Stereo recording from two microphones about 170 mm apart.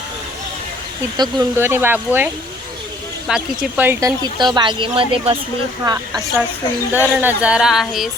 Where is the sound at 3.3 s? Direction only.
5° right (ahead or behind).